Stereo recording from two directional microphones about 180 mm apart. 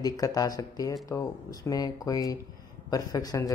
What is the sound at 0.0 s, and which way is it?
Speech, 20° left (ahead or behind).